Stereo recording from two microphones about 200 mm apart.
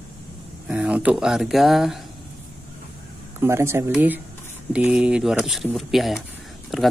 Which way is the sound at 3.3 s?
15° right (ahead or behind).